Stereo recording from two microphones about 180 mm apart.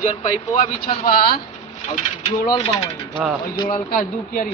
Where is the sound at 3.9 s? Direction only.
50° left (ahead or behind).